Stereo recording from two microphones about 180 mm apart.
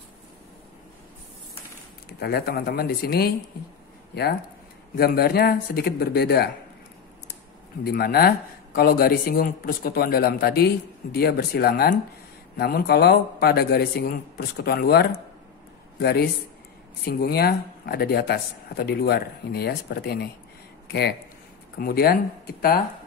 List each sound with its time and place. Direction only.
2.0 s speech: 60° left (ahead or behind)
7.8 s speech: 60° left (ahead or behind)